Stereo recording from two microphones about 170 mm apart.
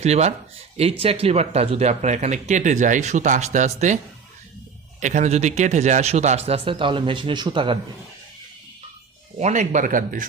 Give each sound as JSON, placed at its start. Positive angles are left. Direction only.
{"t": 0.0, "sound": "speech", "side_deg": -40}
{"t": 9.4, "sound": "speech", "side_deg": -45}